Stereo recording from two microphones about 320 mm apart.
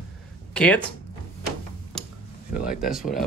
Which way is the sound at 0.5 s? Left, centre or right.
Centre.